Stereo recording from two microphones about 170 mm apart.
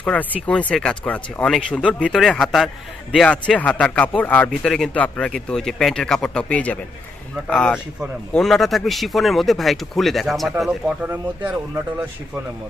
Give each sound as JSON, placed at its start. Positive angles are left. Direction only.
{"t": 0.0, "sound": "speech", "side_deg": 5}